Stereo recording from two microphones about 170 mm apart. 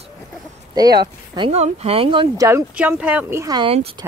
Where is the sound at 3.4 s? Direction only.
25° right (ahead or behind).